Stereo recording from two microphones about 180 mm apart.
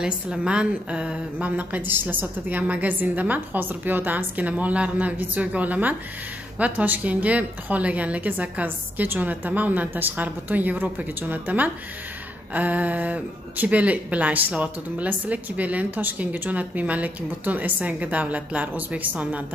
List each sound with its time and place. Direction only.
0.0 s speech: 5° right (ahead or behind)